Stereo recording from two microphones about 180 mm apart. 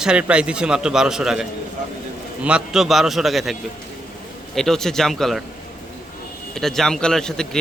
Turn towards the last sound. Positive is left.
turn(degrees=5)  # may be behind; listen again after turning